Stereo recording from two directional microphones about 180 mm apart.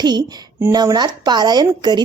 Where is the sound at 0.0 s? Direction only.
25° right (ahead or behind).